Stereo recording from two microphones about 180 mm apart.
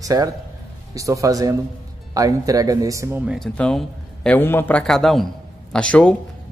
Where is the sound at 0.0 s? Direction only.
20° right (ahead or behind).